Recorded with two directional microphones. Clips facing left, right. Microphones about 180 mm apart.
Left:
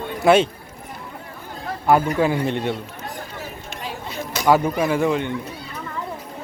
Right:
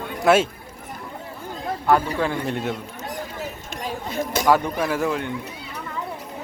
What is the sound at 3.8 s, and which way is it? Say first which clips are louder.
Chatter: right 4 dB; 50° right (ahead or behind).